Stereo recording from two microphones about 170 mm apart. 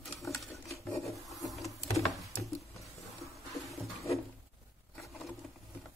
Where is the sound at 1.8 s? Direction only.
40° left (ahead or behind).